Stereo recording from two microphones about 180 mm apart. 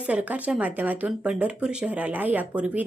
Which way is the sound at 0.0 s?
5° right (ahead or behind).